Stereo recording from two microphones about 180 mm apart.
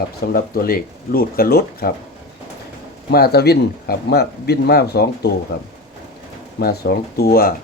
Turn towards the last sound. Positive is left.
turn(degrees=55)  # may be behind; listen again after turning